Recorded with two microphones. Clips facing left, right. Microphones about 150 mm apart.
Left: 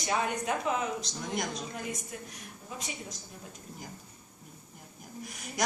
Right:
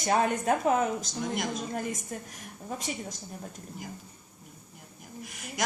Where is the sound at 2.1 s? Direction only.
45° right (ahead or behind).